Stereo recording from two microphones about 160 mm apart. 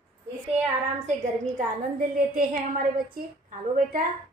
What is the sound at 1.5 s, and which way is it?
Speech, 65° right (ahead or behind).